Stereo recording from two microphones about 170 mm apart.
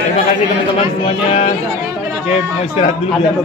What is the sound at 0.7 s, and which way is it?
Speech, 35° left (ahead or behind).